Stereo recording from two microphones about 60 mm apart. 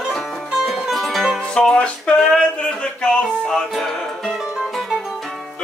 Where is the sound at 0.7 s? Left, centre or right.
Centre.